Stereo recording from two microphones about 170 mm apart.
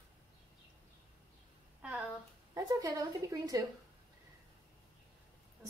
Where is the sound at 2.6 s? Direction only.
20° right (ahead or behind).